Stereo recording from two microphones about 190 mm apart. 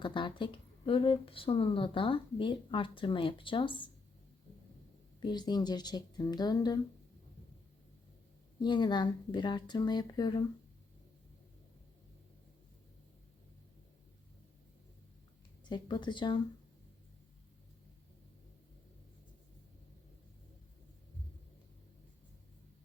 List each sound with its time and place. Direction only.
0.0 s speech: 25° left (ahead or behind)
5.2 s speech: 20° left (ahead or behind)
8.5 s speech: 25° left (ahead or behind)
15.7 s speech: 25° left (ahead or behind)